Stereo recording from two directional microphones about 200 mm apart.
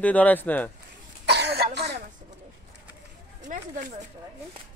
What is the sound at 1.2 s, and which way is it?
Throat clearing, 55° right (ahead or behind).